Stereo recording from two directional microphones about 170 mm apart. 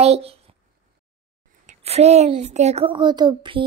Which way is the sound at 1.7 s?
40° right (ahead or behind).